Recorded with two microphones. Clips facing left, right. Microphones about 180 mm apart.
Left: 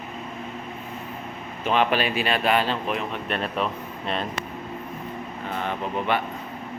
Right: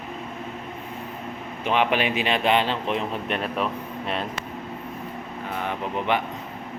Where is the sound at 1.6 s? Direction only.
15° right (ahead or behind).